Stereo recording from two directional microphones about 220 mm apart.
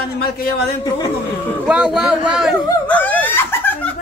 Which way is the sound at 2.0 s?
5° right (ahead or behind).